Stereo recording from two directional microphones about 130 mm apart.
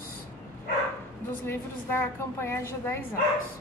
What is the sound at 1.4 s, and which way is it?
A woman's voice, 15° left (ahead or behind).